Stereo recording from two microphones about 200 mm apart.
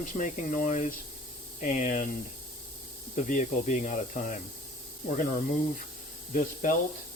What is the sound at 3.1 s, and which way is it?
Speech, 40° left (ahead or behind).